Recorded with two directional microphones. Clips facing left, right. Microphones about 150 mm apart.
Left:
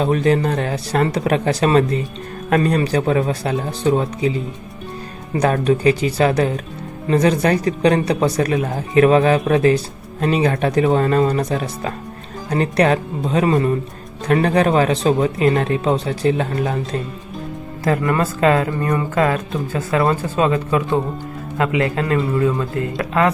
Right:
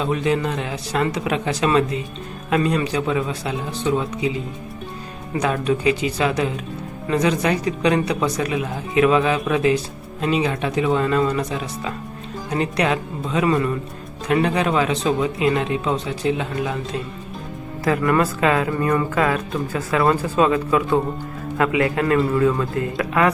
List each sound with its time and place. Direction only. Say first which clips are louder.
0.0 s speech: left 4 dB; 45° left (ahead or behind)
5.3 s speech: left 4 dB; 40° left (ahead or behind)
14.3 s speech: left 4 dB; 45° left (ahead or behind)
18.0 s speech: left 1 dB; 25° left (ahead or behind)